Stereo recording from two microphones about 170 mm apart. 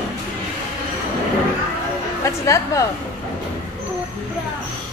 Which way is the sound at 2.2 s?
20° left (ahead or behind).